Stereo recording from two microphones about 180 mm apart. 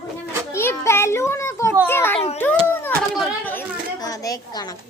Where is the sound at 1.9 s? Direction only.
10° left (ahead or behind).